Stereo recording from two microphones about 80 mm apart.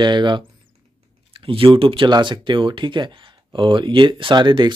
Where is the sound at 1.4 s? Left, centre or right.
Right.